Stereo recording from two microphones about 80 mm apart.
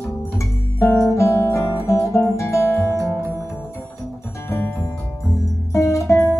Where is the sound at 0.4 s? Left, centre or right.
Left.